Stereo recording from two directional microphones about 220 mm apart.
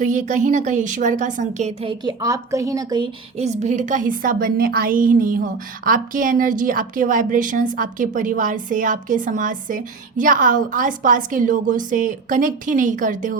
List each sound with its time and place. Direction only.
0.0 s a woman's voice: 35° right (ahead or behind)